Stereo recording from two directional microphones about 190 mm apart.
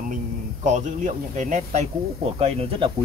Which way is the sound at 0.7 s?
40° right (ahead or behind).